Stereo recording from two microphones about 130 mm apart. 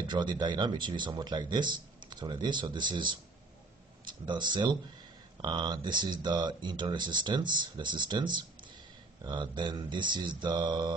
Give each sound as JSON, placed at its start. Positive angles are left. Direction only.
{"t": 0.0, "sound": "speech", "side_deg": -35}